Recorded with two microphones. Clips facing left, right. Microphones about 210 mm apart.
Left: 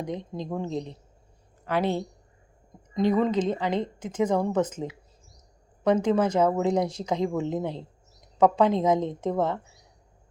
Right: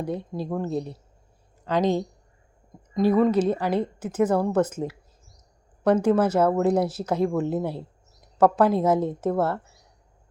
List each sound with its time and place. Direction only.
0.1 s a woman's voice: 10° right (ahead or behind)